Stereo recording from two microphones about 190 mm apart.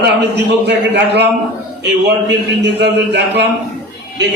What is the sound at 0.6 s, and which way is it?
A man's voice, 60° right (ahead or behind).